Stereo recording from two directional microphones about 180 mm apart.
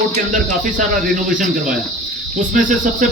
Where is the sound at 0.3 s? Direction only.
45° right (ahead or behind).